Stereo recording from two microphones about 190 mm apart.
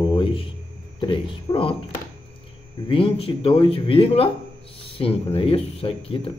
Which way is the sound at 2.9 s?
30° left (ahead or behind).